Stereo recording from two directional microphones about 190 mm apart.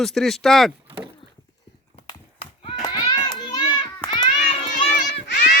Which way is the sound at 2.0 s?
30° left (ahead or behind).